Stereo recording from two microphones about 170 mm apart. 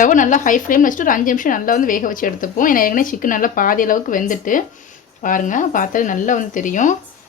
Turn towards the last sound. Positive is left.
turn(degrees=50)  # may be behind; listen again after turning